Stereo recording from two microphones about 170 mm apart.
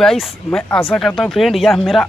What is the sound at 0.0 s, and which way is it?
Speech, 5° left (ahead or behind).